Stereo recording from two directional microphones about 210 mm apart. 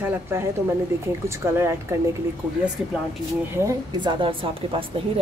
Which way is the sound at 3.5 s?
15° right (ahead or behind).